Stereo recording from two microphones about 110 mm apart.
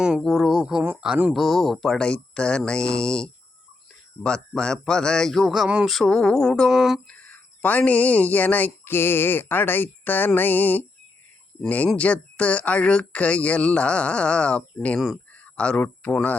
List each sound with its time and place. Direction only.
0.2 s speech: centre (ahead or behind)
7.1 s speech: 15° left (ahead or behind)
11.9 s speech: 10° left (ahead or behind)